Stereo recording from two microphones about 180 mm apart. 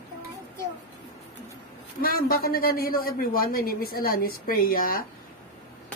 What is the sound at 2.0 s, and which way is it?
A man's voice, 55° left (ahead or behind).